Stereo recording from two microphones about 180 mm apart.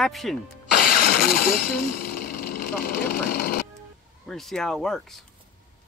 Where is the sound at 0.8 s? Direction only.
55° left (ahead or behind).